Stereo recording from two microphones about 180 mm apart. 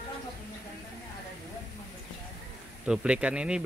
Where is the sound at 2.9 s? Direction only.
5° right (ahead or behind).